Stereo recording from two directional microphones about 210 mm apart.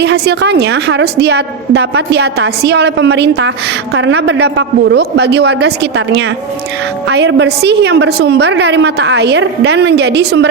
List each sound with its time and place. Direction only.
0.0 s a woman's voice: 55° right (ahead or behind)